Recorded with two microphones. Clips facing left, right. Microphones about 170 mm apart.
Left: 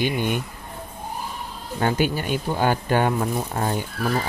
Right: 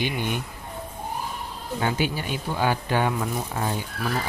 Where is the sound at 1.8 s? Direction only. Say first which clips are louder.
Left 4 dB; 50° left (ahead or behind).